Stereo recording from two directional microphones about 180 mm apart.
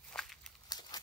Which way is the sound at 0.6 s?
20° left (ahead or behind).